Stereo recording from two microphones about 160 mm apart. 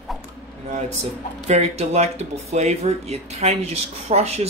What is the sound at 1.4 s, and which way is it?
Speech, 45° right (ahead or behind).